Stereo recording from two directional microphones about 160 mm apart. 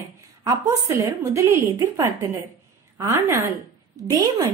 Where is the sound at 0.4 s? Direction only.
20° right (ahead or behind).